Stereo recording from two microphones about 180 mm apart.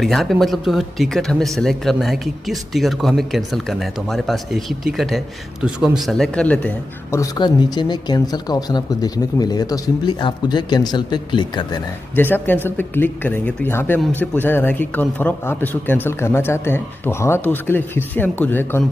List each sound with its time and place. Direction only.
0.0 s speech: centre (ahead or behind)
7.2 s speech: 25° left (ahead or behind)
12.2 s speech: 10° left (ahead or behind)